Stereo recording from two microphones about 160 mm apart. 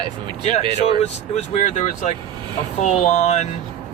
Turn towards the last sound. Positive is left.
turn(degrees=45)  # may be behind; listen again after turning